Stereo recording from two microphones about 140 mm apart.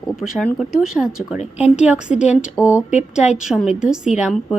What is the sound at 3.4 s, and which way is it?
Speech, 5° right (ahead or behind).